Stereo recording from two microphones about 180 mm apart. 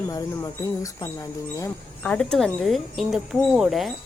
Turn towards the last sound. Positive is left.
turn(degrees=-5)  # may be behind; listen again after turning